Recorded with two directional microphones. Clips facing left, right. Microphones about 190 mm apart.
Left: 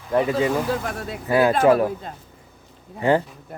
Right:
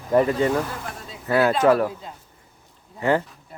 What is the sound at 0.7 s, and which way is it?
Speech, 85° left.